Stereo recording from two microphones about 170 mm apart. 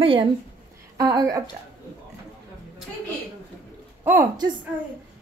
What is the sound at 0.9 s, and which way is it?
Speech, 20° right (ahead or behind).